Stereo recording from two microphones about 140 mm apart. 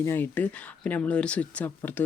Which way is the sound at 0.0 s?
15° left (ahead or behind).